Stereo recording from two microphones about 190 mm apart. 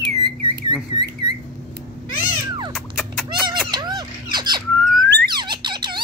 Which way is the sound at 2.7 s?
Centre (ahead or behind).